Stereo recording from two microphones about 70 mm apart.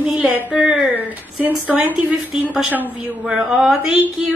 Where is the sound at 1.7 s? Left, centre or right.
Right.